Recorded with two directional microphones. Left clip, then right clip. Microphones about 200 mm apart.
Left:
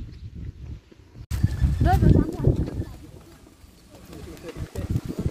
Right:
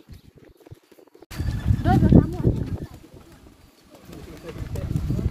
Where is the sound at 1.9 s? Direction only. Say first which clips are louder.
Right 1 dB; 35° left (ahead or behind).